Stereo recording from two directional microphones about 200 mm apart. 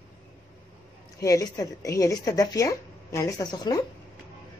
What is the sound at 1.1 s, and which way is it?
A woman's voice, 15° left (ahead or behind).